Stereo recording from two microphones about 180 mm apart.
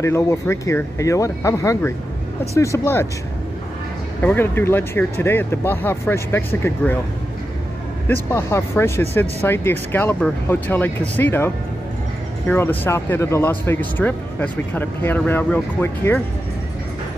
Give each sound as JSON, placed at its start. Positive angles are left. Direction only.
{"t": 0.0, "sound": "speech", "side_deg": 15}
{"t": 4.2, "sound": "speech", "side_deg": 10}
{"t": 8.1, "sound": "speech", "side_deg": 15}